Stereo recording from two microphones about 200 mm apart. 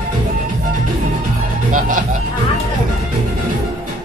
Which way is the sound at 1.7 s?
40° right (ahead or behind).